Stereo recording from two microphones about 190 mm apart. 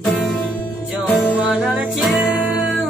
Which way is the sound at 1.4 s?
5° right (ahead or behind).